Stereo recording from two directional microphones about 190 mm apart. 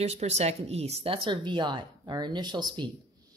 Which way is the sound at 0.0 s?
35° right (ahead or behind).